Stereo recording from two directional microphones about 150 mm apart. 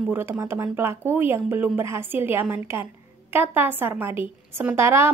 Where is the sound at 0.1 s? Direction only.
15° right (ahead or behind).